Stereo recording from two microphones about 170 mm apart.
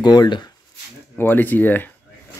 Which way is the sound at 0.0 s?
25° left (ahead or behind).